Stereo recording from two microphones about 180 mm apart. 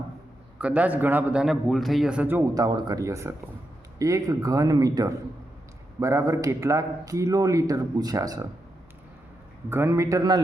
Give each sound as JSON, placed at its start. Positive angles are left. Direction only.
{"t": 0.6, "sound": "a man's voice", "side_deg": -5}
{"t": 2.6, "sound": "a man's voice", "side_deg": -20}
{"t": 9.6, "sound": "a man's voice", "side_deg": -15}